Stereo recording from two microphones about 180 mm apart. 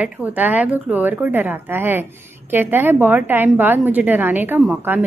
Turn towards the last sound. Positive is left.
turn(degrees=-5)  # may be behind; listen again after turning